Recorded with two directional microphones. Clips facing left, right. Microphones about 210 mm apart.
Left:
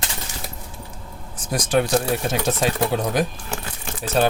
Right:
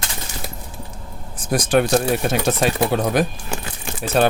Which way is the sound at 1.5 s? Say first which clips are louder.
Right 3 dB; 60° right (ahead or behind).